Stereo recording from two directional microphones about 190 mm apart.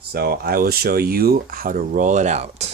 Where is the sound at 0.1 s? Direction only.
55° right (ahead or behind).